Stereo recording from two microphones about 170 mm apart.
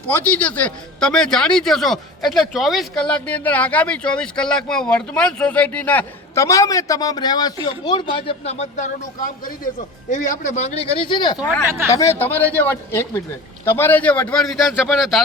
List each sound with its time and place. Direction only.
0.1 s speech: 10° left (ahead or behind); by 11.3 s 25° left (ahead or behind)
11.6 s speech: 15° right (ahead or behind)
11.9 s a man's voice: 15° left (ahead or behind); by 15.2 s centre (ahead or behind)